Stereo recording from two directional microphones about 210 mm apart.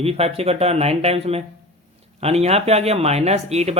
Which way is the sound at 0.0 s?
30° right (ahead or behind).